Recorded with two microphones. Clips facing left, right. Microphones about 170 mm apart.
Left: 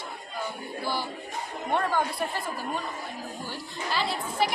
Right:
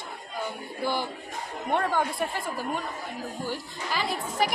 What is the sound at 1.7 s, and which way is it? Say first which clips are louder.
Speech: right 1 dB; 15° right (ahead or behind).